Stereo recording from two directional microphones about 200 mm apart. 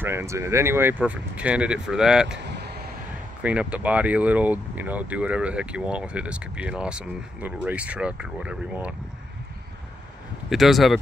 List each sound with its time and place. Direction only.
0.0 s speech: 10° right (ahead or behind)
2.4 s a sound: 55° right (ahead or behind)
3.4 s speech: 5° right (ahead or behind)
10.5 s speech: centre (ahead or behind)